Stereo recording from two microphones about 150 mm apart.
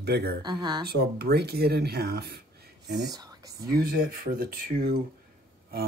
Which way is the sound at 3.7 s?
85° right.